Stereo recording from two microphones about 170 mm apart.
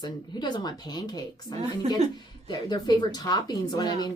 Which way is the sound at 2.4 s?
25° left (ahead or behind).